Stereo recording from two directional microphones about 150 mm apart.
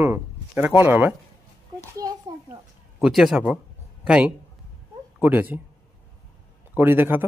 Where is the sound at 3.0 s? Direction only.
Centre (ahead or behind).